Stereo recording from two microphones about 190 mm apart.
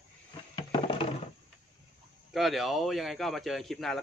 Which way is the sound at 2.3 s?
Centre (ahead or behind).